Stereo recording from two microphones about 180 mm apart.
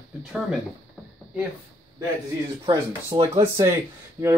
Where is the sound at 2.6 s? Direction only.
30° right (ahead or behind).